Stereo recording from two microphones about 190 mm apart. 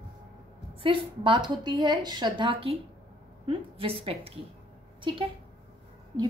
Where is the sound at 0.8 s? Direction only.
25° right (ahead or behind).